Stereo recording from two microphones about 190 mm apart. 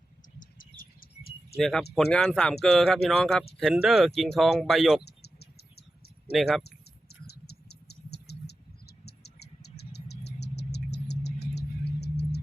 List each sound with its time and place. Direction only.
0.3 s bird: 45° left (ahead or behind)
1.5 s speech: centre (ahead or behind)
5.0 s cricket: 55° left (ahead or behind)
6.6 s a sound: 60° left (ahead or behind)